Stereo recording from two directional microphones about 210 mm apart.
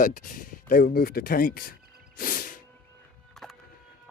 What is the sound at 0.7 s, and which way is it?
Music, 45° left (ahead or behind).